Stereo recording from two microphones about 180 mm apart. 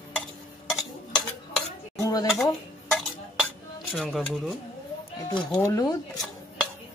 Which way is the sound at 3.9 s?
Centre (ahead or behind).